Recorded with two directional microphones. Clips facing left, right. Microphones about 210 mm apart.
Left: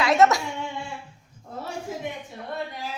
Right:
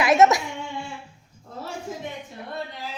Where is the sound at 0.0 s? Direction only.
20° right (ahead or behind).